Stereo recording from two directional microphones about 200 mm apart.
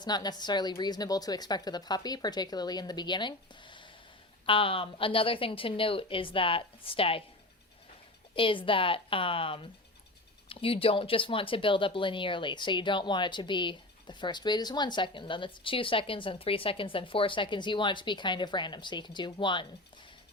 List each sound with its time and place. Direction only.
0.0 s speech: 20° left (ahead or behind)
8.4 s speech: 25° left (ahead or behind)